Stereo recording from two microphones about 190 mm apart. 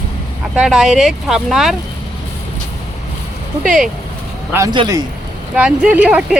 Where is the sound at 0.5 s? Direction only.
5° right (ahead or behind).